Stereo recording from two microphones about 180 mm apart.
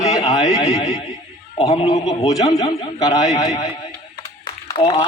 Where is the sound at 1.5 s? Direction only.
35° left (ahead or behind).